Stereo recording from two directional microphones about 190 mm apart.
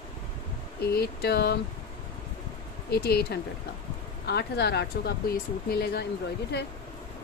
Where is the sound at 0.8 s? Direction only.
55° left (ahead or behind).